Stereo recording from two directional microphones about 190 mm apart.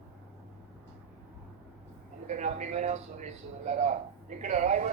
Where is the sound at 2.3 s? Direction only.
40° right (ahead or behind).